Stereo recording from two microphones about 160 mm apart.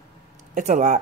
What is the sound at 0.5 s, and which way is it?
Speech, 50° right (ahead or behind).